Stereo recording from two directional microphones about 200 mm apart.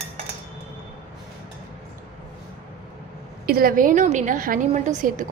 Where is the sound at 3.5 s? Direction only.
45° right (ahead or behind).